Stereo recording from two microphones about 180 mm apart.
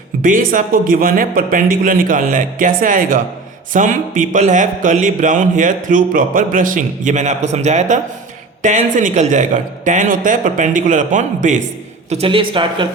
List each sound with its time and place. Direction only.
0.2 s speech: 50° right (ahead or behind)
12.1 s speech: 30° right (ahead or behind)